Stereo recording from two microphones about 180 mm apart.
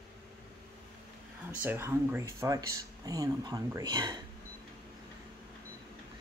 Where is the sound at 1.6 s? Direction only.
15° right (ahead or behind).